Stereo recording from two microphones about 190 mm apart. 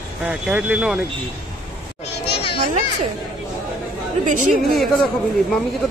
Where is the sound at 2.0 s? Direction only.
30° left (ahead or behind).